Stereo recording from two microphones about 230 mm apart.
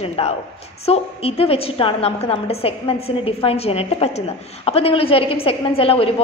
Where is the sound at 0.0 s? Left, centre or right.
Left.